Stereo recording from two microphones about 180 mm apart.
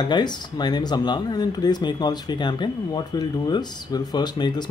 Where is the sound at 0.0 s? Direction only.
25° left (ahead or behind).